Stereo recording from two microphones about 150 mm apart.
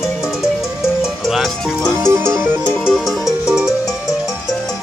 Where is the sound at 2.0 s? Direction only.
15° right (ahead or behind).